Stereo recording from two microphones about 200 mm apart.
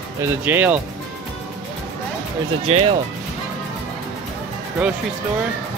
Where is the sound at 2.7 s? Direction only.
30° right (ahead or behind).